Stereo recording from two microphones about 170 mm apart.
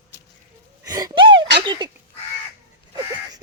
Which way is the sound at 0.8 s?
25° right (ahead or behind).